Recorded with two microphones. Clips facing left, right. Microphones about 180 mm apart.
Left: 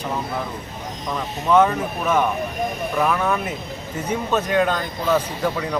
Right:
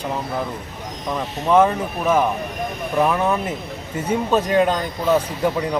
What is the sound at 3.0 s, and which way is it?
Speech, 20° right (ahead or behind).